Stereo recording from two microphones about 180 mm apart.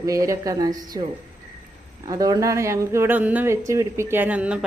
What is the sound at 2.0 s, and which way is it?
Speech, 20° right (ahead or behind).